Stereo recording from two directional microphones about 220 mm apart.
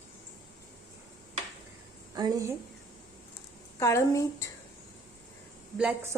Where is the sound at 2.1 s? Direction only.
15° right (ahead or behind).